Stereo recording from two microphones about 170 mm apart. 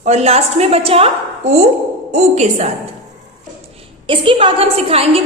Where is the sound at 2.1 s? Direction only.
40° right (ahead or behind).